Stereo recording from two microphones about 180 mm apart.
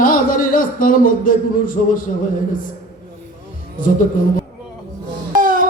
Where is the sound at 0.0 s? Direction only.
50° left (ahead or behind).